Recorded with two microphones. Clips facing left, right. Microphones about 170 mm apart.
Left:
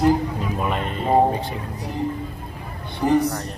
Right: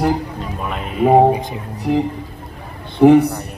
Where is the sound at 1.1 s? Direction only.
75° right (ahead or behind).